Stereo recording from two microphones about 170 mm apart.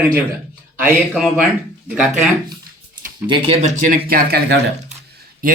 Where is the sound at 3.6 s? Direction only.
45° right (ahead or behind).